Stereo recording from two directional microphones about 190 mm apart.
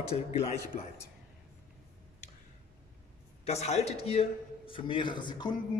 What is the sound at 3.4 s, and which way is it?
A man's voice, 35° left (ahead or behind).